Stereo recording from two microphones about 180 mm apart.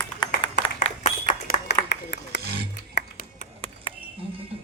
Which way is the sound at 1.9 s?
75° left (ahead or behind).